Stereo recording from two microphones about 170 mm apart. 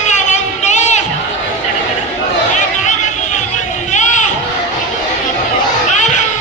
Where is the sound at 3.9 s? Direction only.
45° left (ahead or behind).